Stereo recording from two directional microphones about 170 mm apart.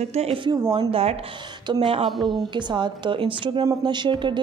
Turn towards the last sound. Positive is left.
turn(degrees=-25)  # may be behind; listen again after turning